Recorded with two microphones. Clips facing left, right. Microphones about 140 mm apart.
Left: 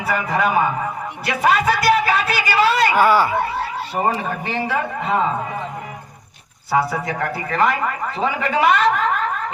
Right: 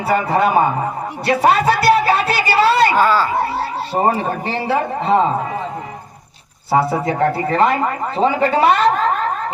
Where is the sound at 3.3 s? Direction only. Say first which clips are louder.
Right 2 dB; 35° right (ahead or behind).